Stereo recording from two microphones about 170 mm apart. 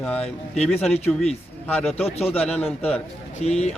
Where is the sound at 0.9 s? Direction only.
40° left (ahead or behind).